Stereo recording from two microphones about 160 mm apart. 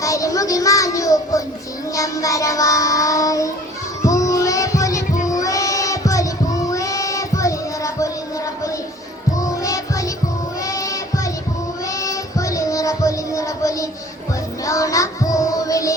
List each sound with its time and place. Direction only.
0.0 s child singing: 20° left (ahead or behind)
9.4 s music: 20° left (ahead or behind)
10.6 s child singing: 20° left (ahead or behind)
14.6 s music: 20° left (ahead or behind)